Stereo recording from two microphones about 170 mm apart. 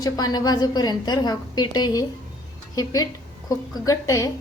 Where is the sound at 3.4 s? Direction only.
20° left (ahead or behind).